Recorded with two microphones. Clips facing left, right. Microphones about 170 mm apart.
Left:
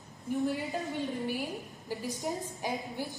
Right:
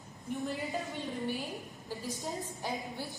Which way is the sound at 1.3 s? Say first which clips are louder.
Left 2 dB; 15° left (ahead or behind).